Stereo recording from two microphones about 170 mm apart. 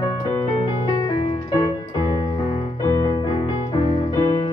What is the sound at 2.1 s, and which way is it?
Music, 30° left (ahead or behind).